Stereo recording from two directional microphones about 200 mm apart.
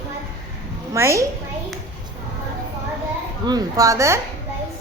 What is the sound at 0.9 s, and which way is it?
Speech, 15° right (ahead or behind).